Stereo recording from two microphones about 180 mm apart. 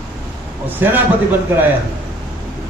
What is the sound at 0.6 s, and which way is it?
Speech, 10° right (ahead or behind).